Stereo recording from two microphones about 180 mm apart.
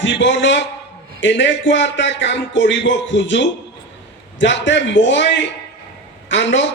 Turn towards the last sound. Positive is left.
turn(degrees=85)